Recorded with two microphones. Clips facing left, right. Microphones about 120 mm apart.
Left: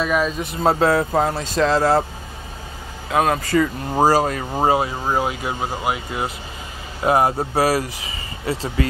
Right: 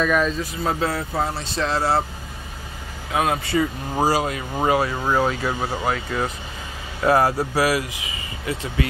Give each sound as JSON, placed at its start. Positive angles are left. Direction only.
{"t": 0.0, "sound": "speech", "side_deg": 5}
{"t": 0.7, "sound": "speech", "side_deg": 45}
{"t": 3.2, "sound": "speech", "side_deg": 45}
{"t": 4.7, "sound": "speech", "side_deg": 25}